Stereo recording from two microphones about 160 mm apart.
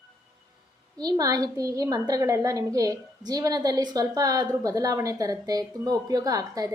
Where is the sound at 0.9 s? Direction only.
25° right (ahead or behind).